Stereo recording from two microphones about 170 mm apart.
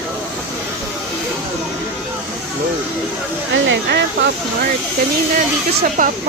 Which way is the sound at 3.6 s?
85° right.